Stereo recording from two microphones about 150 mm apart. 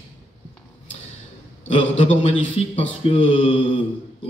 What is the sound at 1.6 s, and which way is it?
A man's voice, 40° left (ahead or behind).